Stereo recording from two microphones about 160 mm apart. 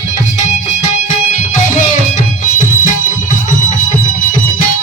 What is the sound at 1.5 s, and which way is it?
Music, 55° left (ahead or behind).